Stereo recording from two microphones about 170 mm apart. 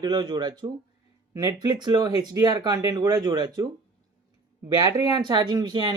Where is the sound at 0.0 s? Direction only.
25° right (ahead or behind).